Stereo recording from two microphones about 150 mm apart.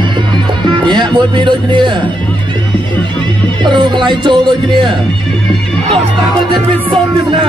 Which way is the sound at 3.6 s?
30° right (ahead or behind).